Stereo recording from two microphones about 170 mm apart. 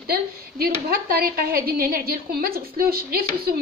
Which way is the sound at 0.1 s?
65° right (ahead or behind).